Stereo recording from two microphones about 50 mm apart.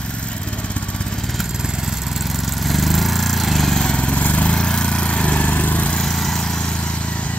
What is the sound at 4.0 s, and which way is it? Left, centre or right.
Vehicle, left.